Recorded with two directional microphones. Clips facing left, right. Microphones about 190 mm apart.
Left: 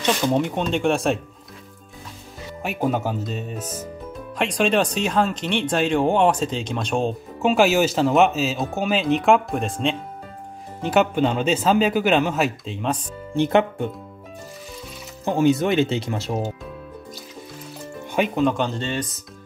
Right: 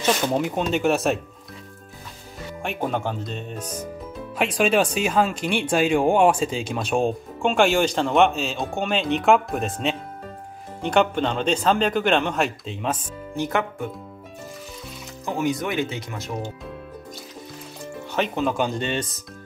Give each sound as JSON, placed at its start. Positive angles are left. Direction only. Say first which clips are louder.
{"t": 0.0, "sound": "speech", "louder": "left 1 dB", "side_deg": -5}
{"t": 2.6, "sound": "speech", "louder": "left 3 dB", "side_deg": 5}
{"t": 4.4, "sound": "speech", "louder": "even", "side_deg": -5}
{"t": 7.4, "sound": "speech", "louder": "left 2 dB", "side_deg": 5}
{"t": 13.4, "sound": "speech", "louder": "left 6 dB", "side_deg": 25}
{"t": 15.2, "sound": "speech", "louder": "left 6 dB", "side_deg": 30}
{"t": 18.1, "sound": "speech", "louder": "left 3 dB", "side_deg": 10}
{"t": 18.4, "sound": "speech", "louder": "left 2 dB", "side_deg": -5}